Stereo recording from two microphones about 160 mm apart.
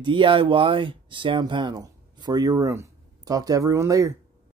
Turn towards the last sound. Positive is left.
turn(degrees=-20)  # may be behind; listen again after turning